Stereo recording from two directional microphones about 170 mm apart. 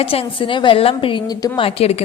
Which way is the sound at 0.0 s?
30° left (ahead or behind).